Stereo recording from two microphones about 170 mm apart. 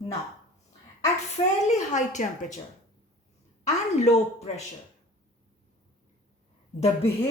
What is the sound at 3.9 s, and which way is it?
Speech, 40° left (ahead or behind).